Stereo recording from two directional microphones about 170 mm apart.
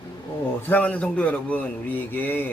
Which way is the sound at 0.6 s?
10° left (ahead or behind).